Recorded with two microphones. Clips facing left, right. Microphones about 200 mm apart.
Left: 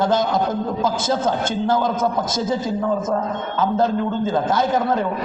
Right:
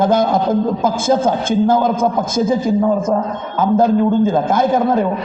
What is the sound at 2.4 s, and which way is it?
Speech, 10° right (ahead or behind).